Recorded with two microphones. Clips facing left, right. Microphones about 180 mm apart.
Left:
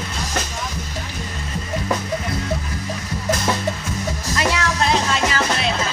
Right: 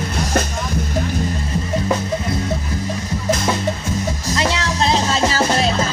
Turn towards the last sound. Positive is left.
turn(degrees=-35)  # may be behind; listen again after turning